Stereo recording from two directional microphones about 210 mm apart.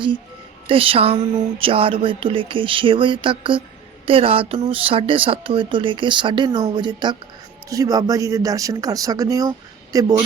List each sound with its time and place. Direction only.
0.7 s speech: 25° right (ahead or behind)